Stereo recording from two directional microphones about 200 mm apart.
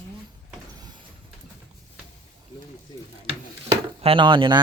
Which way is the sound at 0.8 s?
20° right (ahead or behind).